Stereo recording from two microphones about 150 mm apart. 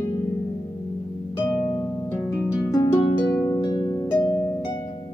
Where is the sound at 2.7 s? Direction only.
25° left (ahead or behind).